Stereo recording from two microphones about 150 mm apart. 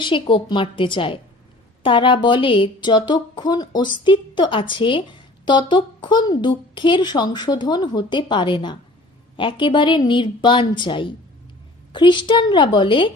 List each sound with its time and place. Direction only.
0.0 s a woman's voice: 35° left (ahead or behind)